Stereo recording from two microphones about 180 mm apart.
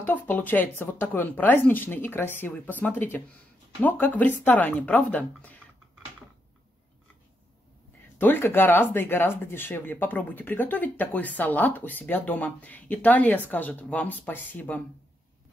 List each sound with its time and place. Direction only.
0.0 s speech: 10° left (ahead or behind)
8.2 s speech: 10° left (ahead or behind)